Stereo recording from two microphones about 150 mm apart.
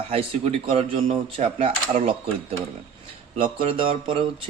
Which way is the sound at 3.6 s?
40° right (ahead or behind).